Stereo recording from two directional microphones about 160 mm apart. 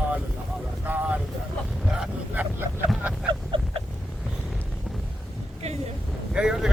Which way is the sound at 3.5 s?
30° right (ahead or behind).